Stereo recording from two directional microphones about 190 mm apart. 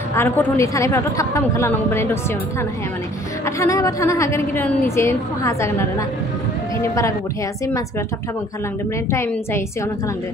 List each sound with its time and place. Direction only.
0.1 s a woman's voice: 15° left (ahead or behind)
3.4 s a woman's voice: 15° left (ahead or behind)
9.1 s a woman's voice: 15° left (ahead or behind)